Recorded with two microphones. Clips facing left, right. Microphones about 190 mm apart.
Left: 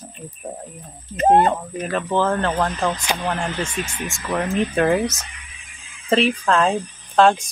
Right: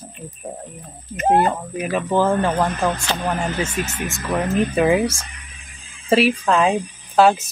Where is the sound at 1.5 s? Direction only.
5° right (ahead or behind).